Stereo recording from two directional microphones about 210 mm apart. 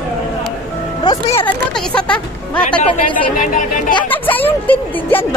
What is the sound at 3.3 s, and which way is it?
Speech, 35° left (ahead or behind).